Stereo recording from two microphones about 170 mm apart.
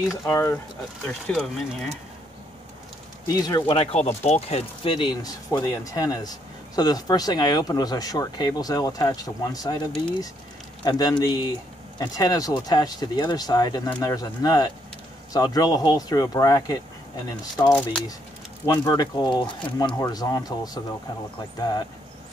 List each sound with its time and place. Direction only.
0.2 s speech: 15° left (ahead or behind)
1.0 s speech: centre (ahead or behind)
3.3 s speech: 20° left (ahead or behind)
17.6 s speech: 5° left (ahead or behind)
18.7 s speech: 25° left (ahead or behind)